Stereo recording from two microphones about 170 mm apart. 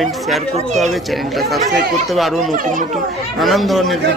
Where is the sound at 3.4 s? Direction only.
Centre (ahead or behind).